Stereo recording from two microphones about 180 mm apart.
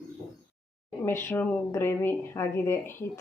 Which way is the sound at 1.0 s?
10° left (ahead or behind).